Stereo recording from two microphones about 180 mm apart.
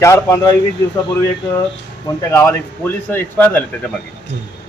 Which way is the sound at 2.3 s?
15° left (ahead or behind).